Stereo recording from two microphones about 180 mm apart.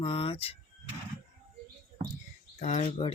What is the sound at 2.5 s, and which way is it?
Speech, 35° left (ahead or behind).